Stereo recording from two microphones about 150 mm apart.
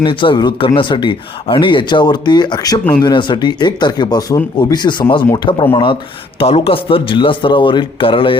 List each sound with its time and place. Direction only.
0.0 s speech: 35° left (ahead or behind)